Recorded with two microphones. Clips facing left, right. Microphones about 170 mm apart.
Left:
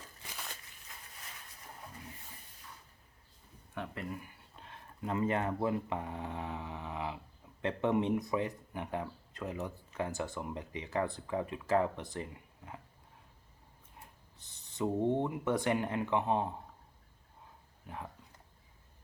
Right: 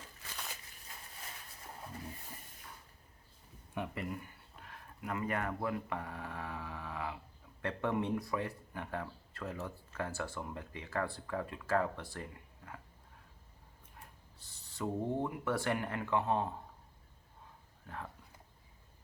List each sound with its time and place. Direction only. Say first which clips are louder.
3.9 s speech: right 1 dB; centre (ahead or behind)
4.6 s speech: left 4 dB; 25° left (ahead or behind)
13.9 s speech: left 1 dB; 20° left (ahead or behind)
17.8 s speech: left 1 dB; 15° left (ahead or behind)